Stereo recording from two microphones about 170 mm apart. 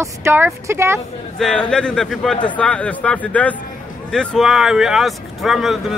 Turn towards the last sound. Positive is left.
turn(degrees=0)  # may be behind; listen again after turning